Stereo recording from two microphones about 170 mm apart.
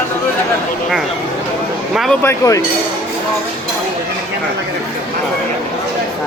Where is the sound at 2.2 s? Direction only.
20° left (ahead or behind).